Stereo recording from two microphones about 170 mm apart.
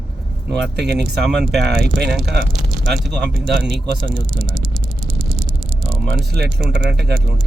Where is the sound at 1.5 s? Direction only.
75° right (ahead or behind).